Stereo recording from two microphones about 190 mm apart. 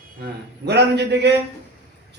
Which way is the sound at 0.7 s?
60° right (ahead or behind).